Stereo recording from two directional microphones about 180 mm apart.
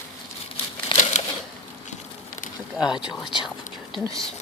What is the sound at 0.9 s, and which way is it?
Crumpling, 25° left (ahead or behind).